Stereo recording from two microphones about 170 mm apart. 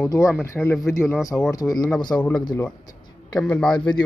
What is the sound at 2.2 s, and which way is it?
Speech, 5° left (ahead or behind).